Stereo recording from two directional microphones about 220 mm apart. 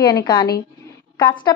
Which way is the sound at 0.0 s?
20° left (ahead or behind).